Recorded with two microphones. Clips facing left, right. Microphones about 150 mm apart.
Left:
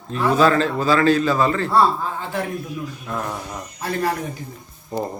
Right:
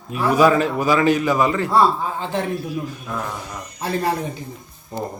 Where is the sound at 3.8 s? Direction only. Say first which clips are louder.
Right 1 dB; 25° right (ahead or behind).